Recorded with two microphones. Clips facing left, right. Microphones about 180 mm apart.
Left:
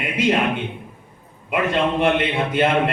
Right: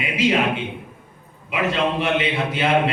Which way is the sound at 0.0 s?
55° left (ahead or behind).